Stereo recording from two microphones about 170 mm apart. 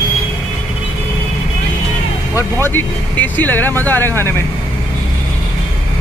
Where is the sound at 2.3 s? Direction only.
15° left (ahead or behind).